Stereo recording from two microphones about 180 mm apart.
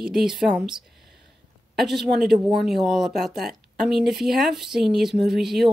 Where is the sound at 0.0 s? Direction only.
Centre (ahead or behind).